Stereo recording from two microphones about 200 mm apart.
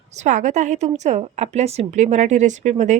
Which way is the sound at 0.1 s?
35° right (ahead or behind).